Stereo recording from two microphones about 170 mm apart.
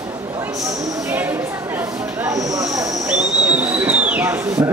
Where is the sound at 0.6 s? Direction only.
20° right (ahead or behind).